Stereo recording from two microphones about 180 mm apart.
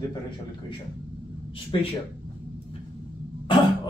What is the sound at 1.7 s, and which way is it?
Speech, 30° left (ahead or behind).